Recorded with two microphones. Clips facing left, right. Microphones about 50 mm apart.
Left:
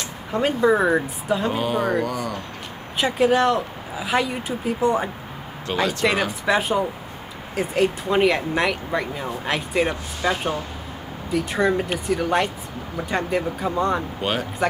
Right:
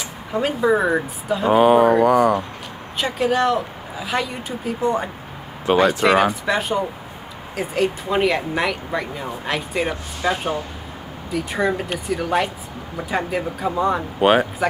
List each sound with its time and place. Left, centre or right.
0.3 s speech: centre
1.5 s speech: right
3.0 s speech: centre
5.7 s speech: right
6.0 s speech: centre
14.2 s speech: right